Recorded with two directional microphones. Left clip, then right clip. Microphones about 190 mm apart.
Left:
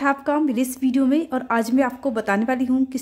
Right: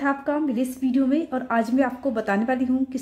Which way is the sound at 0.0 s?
20° left (ahead or behind).